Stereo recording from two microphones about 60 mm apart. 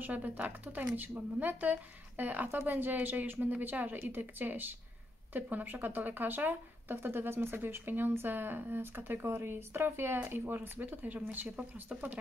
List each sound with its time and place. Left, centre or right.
0.0 s speech: right